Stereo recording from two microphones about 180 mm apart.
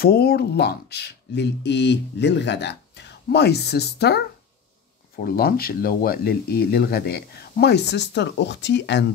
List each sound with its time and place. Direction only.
0.0 s speech: 60° left (ahead or behind); by 9.0 s 75° left (ahead or behind)